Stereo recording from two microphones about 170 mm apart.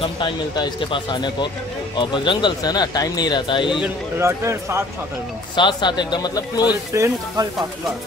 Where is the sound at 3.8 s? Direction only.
15° right (ahead or behind).